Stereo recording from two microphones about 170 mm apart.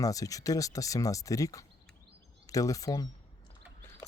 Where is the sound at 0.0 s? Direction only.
20° left (ahead or behind).